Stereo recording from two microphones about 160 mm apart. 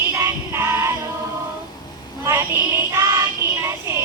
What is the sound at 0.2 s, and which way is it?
Music, 15° right (ahead or behind).